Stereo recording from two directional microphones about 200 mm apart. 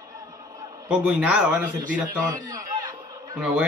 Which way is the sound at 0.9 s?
5° right (ahead or behind).